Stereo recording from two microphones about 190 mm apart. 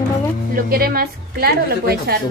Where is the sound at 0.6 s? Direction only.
50° right (ahead or behind).